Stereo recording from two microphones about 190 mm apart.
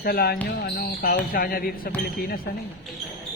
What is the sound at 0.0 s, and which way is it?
Speech, 55° left (ahead or behind).